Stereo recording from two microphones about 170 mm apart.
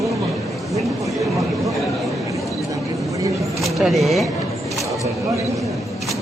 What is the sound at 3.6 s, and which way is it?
Speech, centre (ahead or behind).